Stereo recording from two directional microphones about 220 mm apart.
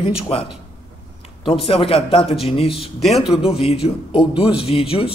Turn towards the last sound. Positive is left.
turn(degrees=25)  # may be behind; listen again after turning